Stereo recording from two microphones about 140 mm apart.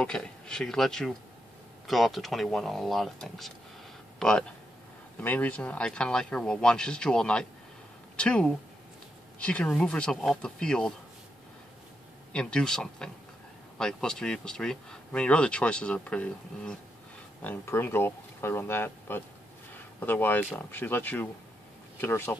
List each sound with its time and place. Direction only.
0.0 s speech: 5° left (ahead or behind)
12.3 s speech: 5° left (ahead or behind)